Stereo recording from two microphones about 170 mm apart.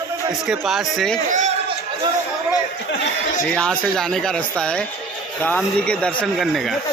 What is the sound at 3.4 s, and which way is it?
Speech, 5° left (ahead or behind).